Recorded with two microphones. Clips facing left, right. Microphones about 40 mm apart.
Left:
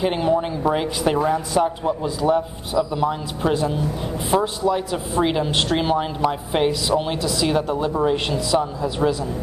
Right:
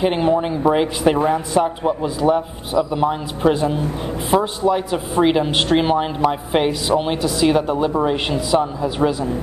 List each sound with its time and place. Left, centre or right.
0.0 s a woman's voice: centre
4.6 s a woman's voice: right